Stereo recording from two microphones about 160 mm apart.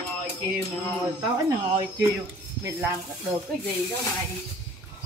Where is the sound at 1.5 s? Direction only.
25° right (ahead or behind).